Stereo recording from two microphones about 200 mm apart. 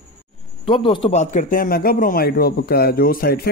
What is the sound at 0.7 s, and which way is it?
Speech, 25° left (ahead or behind).